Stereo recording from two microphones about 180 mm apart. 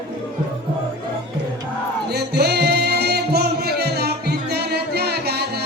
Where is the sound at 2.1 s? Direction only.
65° right (ahead or behind).